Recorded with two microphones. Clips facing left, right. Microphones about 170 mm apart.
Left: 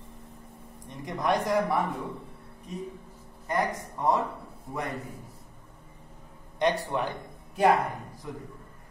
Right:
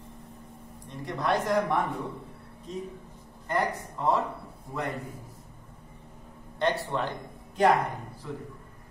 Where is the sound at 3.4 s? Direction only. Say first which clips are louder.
Even; 15° left (ahead or behind).